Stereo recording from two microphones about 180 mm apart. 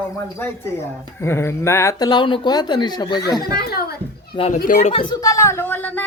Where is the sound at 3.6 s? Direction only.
60° left (ahead or behind).